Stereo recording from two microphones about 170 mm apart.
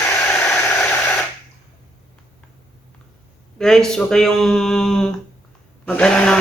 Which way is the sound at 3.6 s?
5° left (ahead or behind).